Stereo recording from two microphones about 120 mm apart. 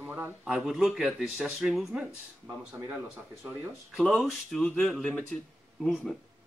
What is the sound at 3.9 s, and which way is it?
Speech, centre (ahead or behind).